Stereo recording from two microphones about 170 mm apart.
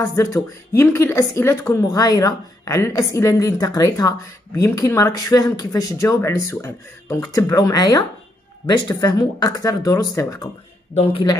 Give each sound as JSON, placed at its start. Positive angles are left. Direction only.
{"t": 0.0, "sound": "a woman's voice", "side_deg": 20}